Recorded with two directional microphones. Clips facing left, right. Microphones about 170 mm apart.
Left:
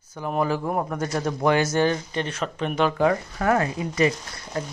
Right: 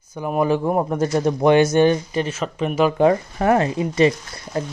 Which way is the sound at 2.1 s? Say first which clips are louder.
Right 4 dB; 5° right (ahead or behind).